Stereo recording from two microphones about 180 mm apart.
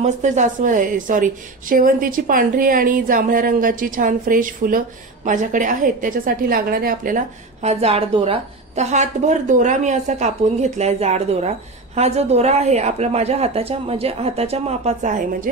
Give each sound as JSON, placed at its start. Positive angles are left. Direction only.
{"t": 0.0, "sound": "a woman's voice", "side_deg": -40}